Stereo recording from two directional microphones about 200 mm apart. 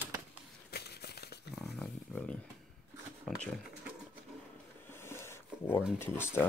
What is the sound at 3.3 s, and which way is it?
Speech, 5° left (ahead or behind).